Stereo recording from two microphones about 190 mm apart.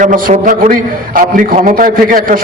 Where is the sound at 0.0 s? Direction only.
45° right (ahead or behind).